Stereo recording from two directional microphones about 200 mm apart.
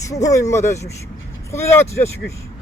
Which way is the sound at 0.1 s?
15° left (ahead or behind).